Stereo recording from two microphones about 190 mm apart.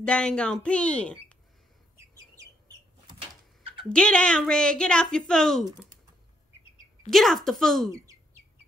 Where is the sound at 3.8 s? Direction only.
5° left (ahead or behind).